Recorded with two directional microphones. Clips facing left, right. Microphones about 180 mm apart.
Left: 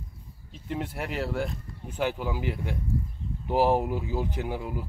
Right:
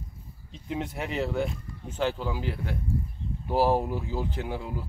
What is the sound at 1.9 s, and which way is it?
Speech, 10° left (ahead or behind).